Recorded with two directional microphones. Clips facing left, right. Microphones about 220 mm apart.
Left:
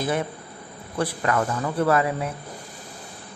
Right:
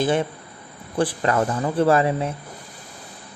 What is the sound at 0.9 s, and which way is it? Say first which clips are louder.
Speech: right 3 dB; 30° right (ahead or behind).